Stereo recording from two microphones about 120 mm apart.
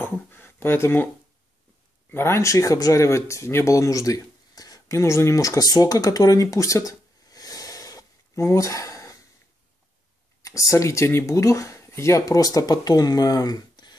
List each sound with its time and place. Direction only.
0.0 s a sound: 15° left (ahead or behind)
2.0 s speech: 20° left (ahead or behind)
10.4 s speech: 25° left (ahead or behind)